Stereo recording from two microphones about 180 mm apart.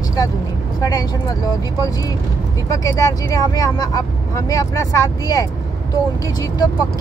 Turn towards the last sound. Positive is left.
turn(degrees=20)  # may be behind; listen again after turning